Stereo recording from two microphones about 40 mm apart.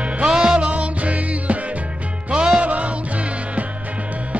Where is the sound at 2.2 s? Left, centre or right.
Right.